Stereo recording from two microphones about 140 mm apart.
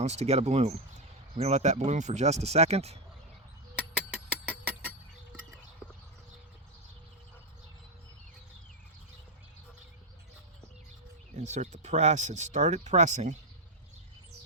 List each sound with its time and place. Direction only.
0.0 s speech: 50° right (ahead or behind)
3.8 s a sound: 10° right (ahead or behind)
11.3 s speech: 55° right (ahead or behind)